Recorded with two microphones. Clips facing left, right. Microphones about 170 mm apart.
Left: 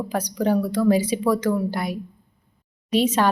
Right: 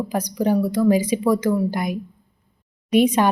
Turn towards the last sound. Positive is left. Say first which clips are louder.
# right 3 dB
turn(degrees=-15)  # may be behind; listen again after turning